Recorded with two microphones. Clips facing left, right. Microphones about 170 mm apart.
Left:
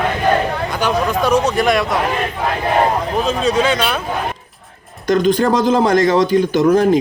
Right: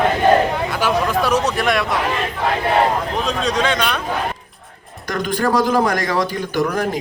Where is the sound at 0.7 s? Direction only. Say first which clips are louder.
Left 1 dB; 5° right (ahead or behind).